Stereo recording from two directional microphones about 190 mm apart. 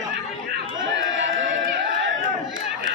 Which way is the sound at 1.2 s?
75° right (ahead or behind).